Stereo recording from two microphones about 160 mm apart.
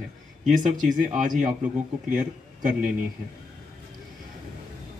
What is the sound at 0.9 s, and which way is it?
A man's voice, 55° right (ahead or behind).